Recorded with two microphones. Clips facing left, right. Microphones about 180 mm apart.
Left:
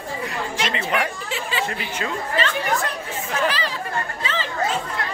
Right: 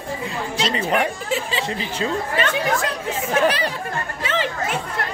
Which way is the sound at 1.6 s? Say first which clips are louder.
Right 2 dB; 30° right (ahead or behind).